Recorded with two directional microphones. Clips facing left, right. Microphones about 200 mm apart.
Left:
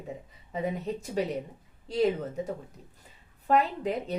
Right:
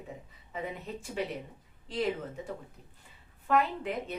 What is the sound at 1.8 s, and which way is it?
Speech, 40° left (ahead or behind).